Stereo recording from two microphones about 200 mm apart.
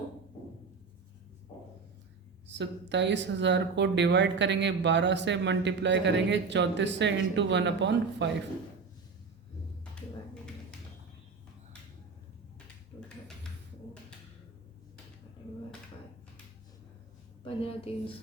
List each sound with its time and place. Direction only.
2.5 s speech: 60° right (ahead or behind)
17.4 s a woman's voice: 30° left (ahead or behind)